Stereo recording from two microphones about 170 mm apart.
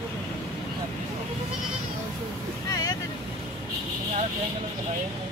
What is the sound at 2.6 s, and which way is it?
Boat, 20° left (ahead or behind).